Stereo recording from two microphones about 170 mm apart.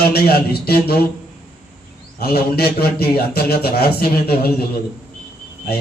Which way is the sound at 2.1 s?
65° left (ahead or behind).